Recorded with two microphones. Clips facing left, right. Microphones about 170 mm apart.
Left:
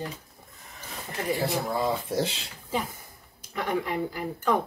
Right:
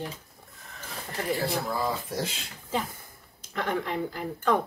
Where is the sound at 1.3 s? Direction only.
20° left (ahead or behind).